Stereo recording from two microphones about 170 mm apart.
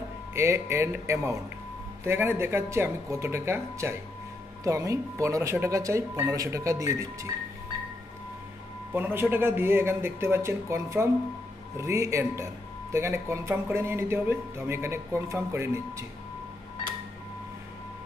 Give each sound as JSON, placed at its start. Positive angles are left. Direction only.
{"t": 0.3, "sound": "speech", "side_deg": -15}
{"t": 8.9, "sound": "speech", "side_deg": -10}